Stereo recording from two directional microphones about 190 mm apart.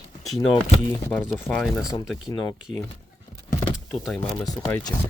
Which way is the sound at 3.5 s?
20° left (ahead or behind).